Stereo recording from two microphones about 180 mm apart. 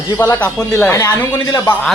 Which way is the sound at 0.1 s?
15° left (ahead or behind).